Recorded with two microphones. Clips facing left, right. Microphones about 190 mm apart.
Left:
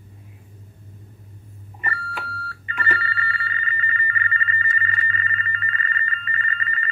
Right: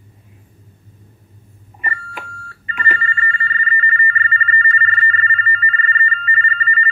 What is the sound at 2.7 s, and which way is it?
Telephone bell ringing, 15° right (ahead or behind).